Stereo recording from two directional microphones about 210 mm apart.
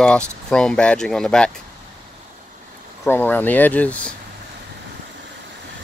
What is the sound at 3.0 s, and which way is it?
Speech, 10° left (ahead or behind).